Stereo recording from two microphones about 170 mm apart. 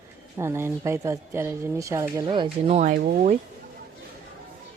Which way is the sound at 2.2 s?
30° right (ahead or behind).